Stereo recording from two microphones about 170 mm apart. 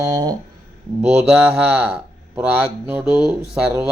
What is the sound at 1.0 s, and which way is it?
A man's voice, 5° right (ahead or behind).